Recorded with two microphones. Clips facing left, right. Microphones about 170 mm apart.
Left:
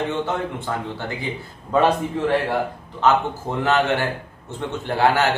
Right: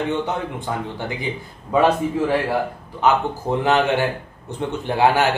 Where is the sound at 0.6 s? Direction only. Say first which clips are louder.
Right 1 dB; 15° right (ahead or behind).